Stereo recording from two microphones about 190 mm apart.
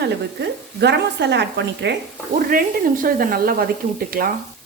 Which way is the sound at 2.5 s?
50° right (ahead or behind).